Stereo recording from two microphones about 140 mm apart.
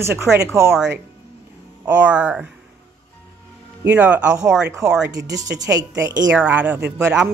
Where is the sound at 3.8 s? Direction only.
10° right (ahead or behind).